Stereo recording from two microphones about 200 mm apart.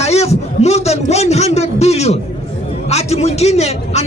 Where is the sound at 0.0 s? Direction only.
30° left (ahead or behind).